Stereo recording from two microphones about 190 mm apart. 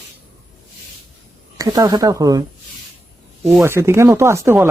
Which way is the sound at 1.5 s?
20° right (ahead or behind).